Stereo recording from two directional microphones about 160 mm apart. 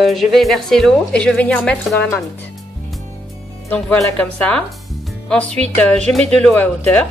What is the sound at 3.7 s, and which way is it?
A woman's voice, 5° left (ahead or behind).